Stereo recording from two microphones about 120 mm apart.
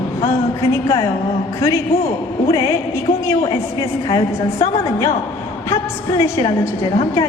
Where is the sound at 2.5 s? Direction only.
25° left (ahead or behind).